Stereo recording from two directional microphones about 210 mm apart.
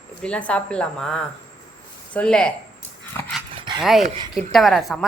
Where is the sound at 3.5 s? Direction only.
20° right (ahead or behind).